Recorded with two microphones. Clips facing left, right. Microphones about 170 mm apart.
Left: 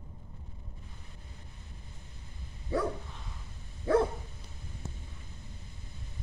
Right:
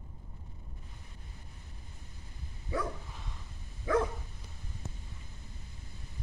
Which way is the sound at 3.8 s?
35° left (ahead or behind).